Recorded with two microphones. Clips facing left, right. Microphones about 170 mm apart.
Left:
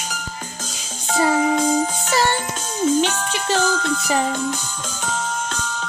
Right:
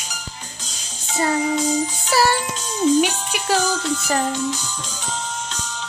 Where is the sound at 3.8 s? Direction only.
55° left (ahead or behind).